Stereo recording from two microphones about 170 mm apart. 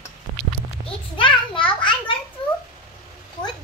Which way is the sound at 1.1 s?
30° left (ahead or behind).